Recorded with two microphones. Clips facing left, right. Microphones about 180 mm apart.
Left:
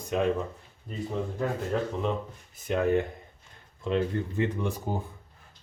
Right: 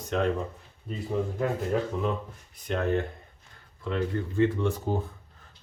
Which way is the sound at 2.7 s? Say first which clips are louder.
Left 2 dB; 10° left (ahead or behind).